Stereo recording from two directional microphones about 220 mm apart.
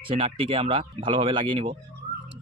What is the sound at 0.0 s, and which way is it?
A man's voice, 25° right (ahead or behind).